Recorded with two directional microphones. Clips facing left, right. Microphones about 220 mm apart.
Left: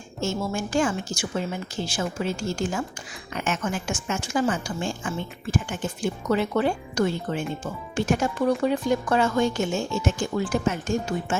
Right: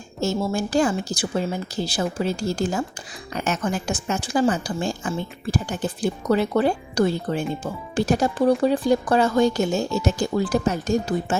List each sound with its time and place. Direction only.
0.2 s a woman's voice: 35° right (ahead or behind)